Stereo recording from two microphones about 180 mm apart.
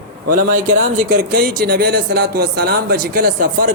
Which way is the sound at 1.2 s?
55° right (ahead or behind).